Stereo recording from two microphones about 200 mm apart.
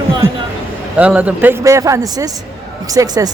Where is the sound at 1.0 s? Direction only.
5° right (ahead or behind).